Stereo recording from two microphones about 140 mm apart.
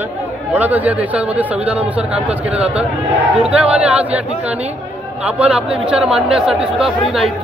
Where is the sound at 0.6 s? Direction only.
10° right (ahead or behind).